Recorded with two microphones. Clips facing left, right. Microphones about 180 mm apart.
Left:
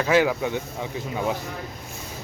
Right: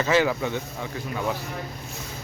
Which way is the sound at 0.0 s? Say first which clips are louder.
Left 1 dB; 10° left (ahead or behind).